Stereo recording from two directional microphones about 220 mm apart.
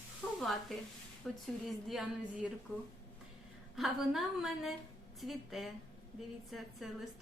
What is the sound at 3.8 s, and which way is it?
A woman's voice, centre (ahead or behind).